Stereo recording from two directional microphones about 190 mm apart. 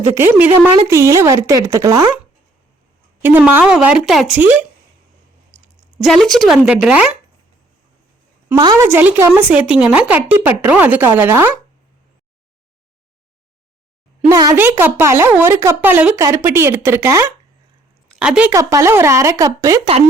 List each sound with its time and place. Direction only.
0.1 s speech: 10° right (ahead or behind)
3.2 s speech: 10° right (ahead or behind)
6.0 s speech: centre (ahead or behind)
8.4 s speech: 20° right (ahead or behind)
14.3 s speech: 15° right (ahead or behind)
18.5 s speech: 15° right (ahead or behind)